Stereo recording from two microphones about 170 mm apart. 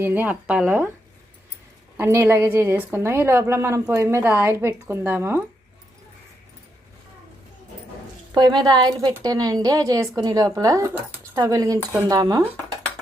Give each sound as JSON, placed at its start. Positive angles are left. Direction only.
{"t": 0.0, "sound": "a woman's voice", "side_deg": -10}
{"t": 2.0, "sound": "a woman's voice", "side_deg": -15}
{"t": 8.3, "sound": "a woman's voice", "side_deg": -25}